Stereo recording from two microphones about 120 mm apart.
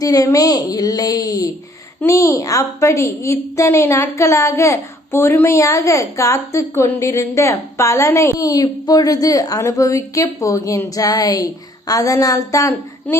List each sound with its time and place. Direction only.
0.0 s a woman's voice: 30° left (ahead or behind)